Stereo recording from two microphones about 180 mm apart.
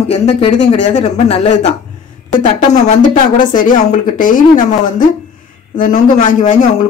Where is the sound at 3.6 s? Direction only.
45° left (ahead or behind).